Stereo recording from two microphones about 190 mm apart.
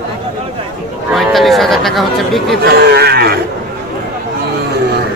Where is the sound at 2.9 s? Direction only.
55° right (ahead or behind).